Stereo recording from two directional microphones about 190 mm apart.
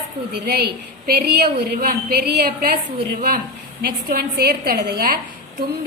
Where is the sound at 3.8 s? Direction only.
55° right (ahead or behind).